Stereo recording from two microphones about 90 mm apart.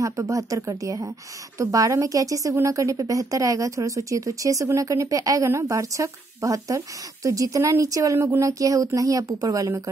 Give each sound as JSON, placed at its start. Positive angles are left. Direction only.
{"t": 0.0, "sound": "a woman's voice", "side_deg": -40}